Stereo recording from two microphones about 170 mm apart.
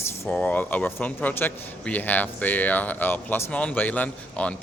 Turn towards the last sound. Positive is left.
turn(degrees=10)  # may be behind; listen again after turning